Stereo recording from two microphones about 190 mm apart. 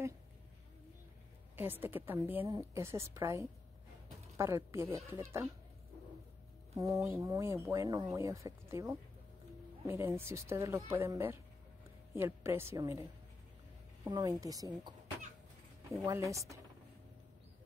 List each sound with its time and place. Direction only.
1.6 s speech: 10° right (ahead or behind)
6.7 s speech: 15° right (ahead or behind)
14.0 s a woman's voice: 20° right (ahead or behind)